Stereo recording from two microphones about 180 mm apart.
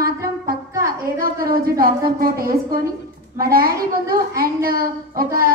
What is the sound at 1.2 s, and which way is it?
A woman's voice, 55° right (ahead or behind).